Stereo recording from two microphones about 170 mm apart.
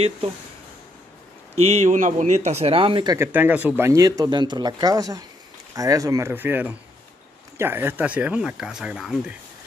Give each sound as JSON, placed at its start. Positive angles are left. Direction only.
{"t": 1.6, "sound": "speech", "side_deg": -40}
{"t": 3.2, "sound": "speech", "side_deg": -10}